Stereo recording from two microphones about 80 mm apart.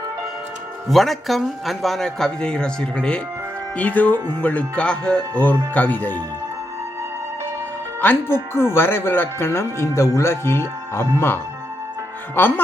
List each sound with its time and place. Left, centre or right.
0.9 s a man's voice: centre; by 6.2 s left
8.0 s speech: left